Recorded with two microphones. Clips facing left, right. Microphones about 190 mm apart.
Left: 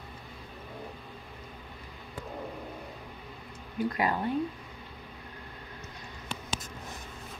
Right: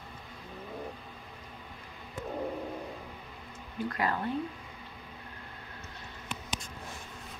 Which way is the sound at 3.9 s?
15° left (ahead or behind).